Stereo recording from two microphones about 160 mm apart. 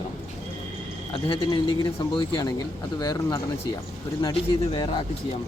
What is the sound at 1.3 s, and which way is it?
Speech, 35° left (ahead or behind).